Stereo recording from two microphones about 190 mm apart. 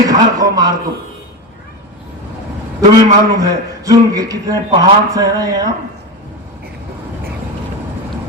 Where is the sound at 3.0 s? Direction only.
20° right (ahead or behind).